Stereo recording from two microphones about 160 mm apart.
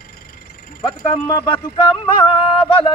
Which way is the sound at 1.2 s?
20° left (ahead or behind).